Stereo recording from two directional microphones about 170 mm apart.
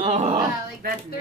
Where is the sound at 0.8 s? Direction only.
60° right (ahead or behind).